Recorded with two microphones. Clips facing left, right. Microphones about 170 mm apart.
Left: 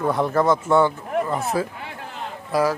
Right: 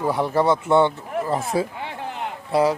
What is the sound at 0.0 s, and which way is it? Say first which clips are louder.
Speech: even; 10° right (ahead or behind).